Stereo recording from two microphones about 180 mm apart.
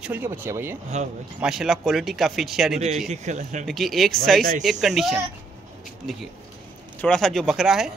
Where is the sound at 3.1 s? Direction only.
40° right (ahead or behind).